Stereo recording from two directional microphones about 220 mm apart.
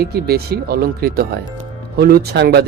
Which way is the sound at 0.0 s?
45° right (ahead or behind).